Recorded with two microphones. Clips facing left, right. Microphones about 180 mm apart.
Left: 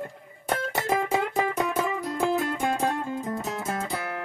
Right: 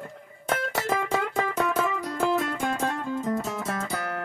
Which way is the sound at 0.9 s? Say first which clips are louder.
Left 3 dB; 20° left (ahead or behind).